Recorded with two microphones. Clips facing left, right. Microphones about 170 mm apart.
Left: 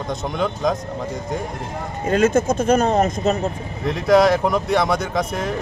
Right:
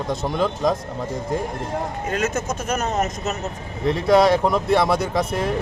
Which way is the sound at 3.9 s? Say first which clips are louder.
Left 1 dB; centre (ahead or behind).